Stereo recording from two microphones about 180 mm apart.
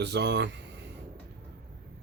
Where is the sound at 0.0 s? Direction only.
70° right (ahead or behind).